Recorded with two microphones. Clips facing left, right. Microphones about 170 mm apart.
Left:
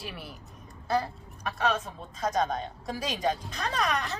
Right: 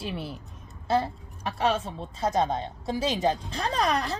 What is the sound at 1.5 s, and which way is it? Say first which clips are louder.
A woman's voice: right 3 dB; 30° right (ahead or behind).